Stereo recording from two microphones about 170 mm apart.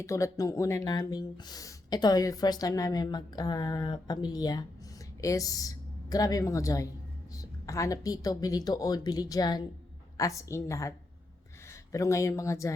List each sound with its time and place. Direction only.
0.0 s speech: 20° left (ahead or behind)